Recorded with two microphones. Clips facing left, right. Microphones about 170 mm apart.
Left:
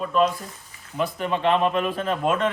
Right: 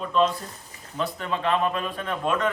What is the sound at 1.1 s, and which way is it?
A man's voice, 20° left (ahead or behind).